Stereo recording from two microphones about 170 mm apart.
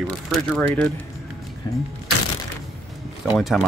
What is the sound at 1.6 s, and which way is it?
Speech, 25° left (ahead or behind).